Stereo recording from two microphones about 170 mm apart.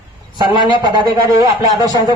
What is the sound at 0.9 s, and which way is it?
Speech, 25° right (ahead or behind).